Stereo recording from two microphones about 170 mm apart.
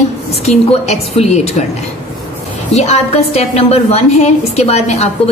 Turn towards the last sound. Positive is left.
turn(degrees=40)  # may be behind; listen again after turning